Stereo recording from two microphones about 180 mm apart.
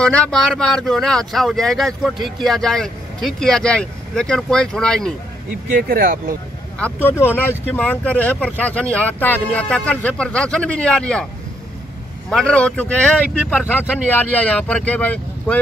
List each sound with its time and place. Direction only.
0.0 s speech: 5° left (ahead or behind)
5.8 s speech: 55° right (ahead or behind)
6.8 s speech: 10° left (ahead or behind)
12.3 s speech: 5° left (ahead or behind)